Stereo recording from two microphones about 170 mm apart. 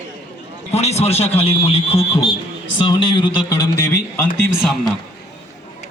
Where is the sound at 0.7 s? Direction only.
40° left (ahead or behind); by 4.0 s 20° left (ahead or behind).